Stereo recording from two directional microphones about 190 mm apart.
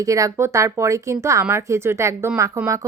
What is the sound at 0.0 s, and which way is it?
A woman's voice, 15° right (ahead or behind).